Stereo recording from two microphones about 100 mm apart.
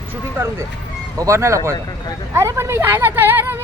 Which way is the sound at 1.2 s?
30° right (ahead or behind).